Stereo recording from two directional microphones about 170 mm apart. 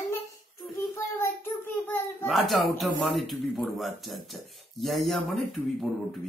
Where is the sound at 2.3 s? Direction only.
Centre (ahead or behind).